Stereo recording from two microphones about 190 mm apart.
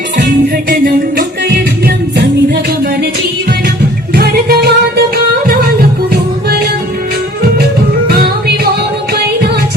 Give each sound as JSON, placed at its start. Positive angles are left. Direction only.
{"t": 0.7, "sound": "music", "side_deg": -50}
{"t": 4.1, "sound": "music", "side_deg": -55}
{"t": 8.0, "sound": "music", "side_deg": -55}